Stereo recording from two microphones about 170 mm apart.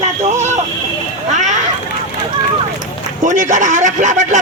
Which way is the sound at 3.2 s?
45° right (ahead or behind).